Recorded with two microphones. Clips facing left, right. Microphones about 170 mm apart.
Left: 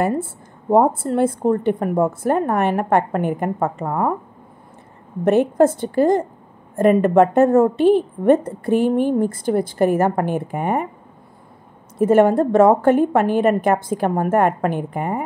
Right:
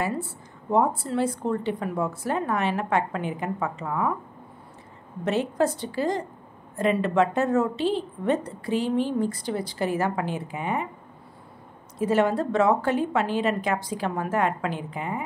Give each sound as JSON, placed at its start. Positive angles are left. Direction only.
{"t": 0.0, "sound": "a woman's voice", "side_deg": 50}
{"t": 5.2, "sound": "a woman's voice", "side_deg": 55}
{"t": 12.0, "sound": "a woman's voice", "side_deg": 50}